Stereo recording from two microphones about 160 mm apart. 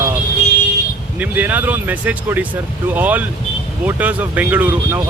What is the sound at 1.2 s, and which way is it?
Speech, 10° right (ahead or behind).